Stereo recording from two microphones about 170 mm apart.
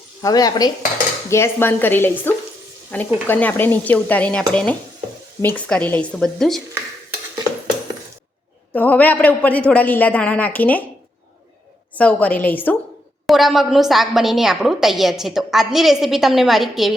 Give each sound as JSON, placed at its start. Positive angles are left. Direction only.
{"t": 0.2, "sound": "dishes", "side_deg": 20}
{"t": 1.3, "sound": "a man's voice", "side_deg": 15}
{"t": 8.7, "sound": "a man's voice", "side_deg": 10}
{"t": 11.9, "sound": "a man's voice", "side_deg": 10}
{"t": 13.2, "sound": "a woman's voice", "side_deg": 0}